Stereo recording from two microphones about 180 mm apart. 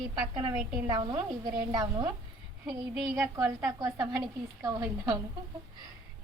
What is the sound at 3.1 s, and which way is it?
A woman's voice, 15° right (ahead or behind).